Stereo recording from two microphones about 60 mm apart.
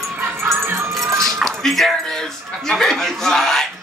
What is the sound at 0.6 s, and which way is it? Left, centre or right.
Music, right.